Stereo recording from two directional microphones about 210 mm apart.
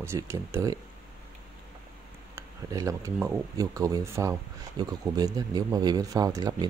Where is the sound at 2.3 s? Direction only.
15° right (ahead or behind).